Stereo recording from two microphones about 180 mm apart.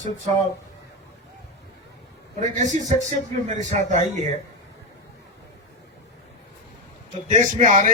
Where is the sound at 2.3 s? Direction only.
40° right (ahead or behind).